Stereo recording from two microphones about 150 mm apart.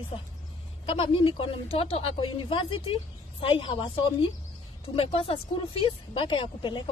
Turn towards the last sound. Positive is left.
turn(degrees=35)  # may be behind; listen again after turning